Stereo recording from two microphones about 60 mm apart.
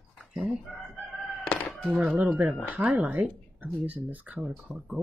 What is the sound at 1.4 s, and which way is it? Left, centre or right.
Chicken, centre.